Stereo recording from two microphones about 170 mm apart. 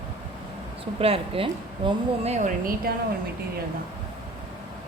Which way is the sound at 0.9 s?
35° right (ahead or behind).